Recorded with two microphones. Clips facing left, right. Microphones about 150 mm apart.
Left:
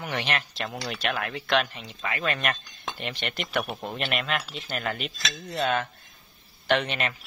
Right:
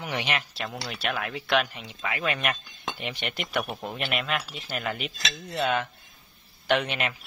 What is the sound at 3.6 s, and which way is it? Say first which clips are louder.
Speech: left 1 dB; centre (ahead or behind).